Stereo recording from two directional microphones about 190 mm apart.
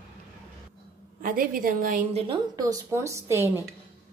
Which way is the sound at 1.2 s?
50° right (ahead or behind).